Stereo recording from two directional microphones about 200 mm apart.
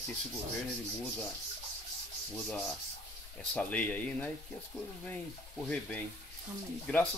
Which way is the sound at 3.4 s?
5° left (ahead or behind).